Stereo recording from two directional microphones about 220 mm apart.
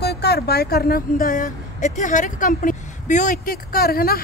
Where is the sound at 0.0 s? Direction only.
50° left (ahead or behind).